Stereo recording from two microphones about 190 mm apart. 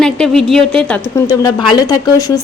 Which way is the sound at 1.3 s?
20° left (ahead or behind).